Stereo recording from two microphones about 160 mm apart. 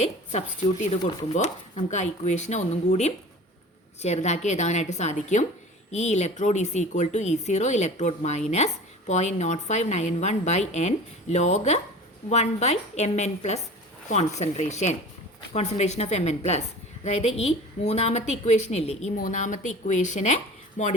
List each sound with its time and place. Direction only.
0.0 s a woman's voice: 40° left (ahead or behind)
19.1 s speech: 55° left (ahead or behind)